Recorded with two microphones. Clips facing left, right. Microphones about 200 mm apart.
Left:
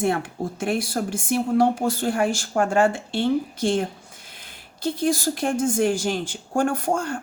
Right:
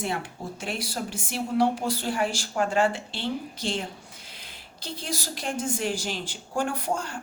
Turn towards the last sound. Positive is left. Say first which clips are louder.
# left 6 dB
turn(degrees=50)  # may be behind; listen again after turning